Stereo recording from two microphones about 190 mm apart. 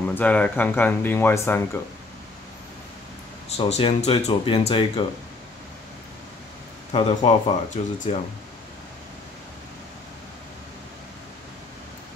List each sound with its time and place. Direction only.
0.1 s speech: 5° left (ahead or behind)
3.5 s speech: 35° left (ahead or behind)
6.9 s speech: 30° left (ahead or behind)